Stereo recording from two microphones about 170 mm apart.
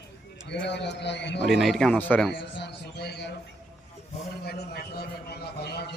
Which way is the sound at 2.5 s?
80° left.